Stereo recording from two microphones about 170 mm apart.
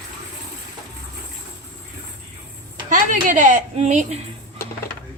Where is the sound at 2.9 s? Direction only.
50° right (ahead or behind).